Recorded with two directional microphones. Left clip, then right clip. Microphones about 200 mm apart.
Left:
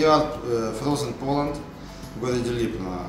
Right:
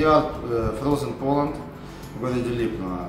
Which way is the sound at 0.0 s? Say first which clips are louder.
Even; 15° right (ahead or behind).